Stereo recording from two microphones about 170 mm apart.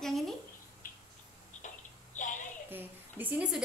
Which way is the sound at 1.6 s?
50° left (ahead or behind).